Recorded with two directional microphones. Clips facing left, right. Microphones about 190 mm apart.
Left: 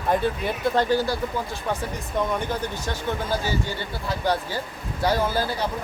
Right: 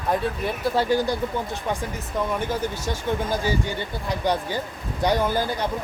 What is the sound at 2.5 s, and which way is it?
Speech, 10° right (ahead or behind).